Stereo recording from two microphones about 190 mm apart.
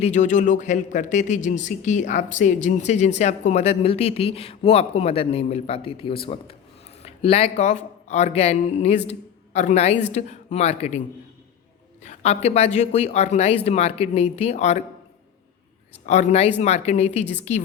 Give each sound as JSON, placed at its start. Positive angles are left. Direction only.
{"t": 0.0, "sound": "a man's voice", "side_deg": 40}
{"t": 12.0, "sound": "a man's voice", "side_deg": 35}
{"t": 16.0, "sound": "a man's voice", "side_deg": 40}